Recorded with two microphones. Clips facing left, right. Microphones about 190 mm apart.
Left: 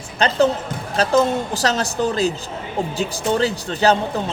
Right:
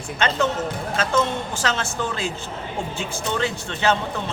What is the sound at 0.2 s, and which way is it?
Speech, 35° left (ahead or behind).